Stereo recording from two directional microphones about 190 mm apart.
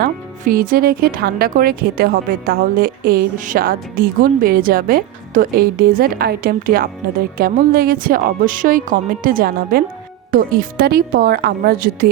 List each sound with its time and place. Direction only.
0.0 s speech: 50° right (ahead or behind)